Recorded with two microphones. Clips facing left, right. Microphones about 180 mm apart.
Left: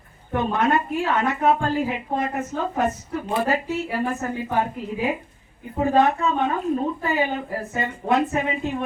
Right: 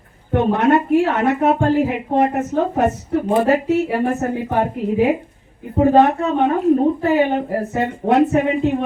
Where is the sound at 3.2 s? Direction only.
50° right (ahead or behind).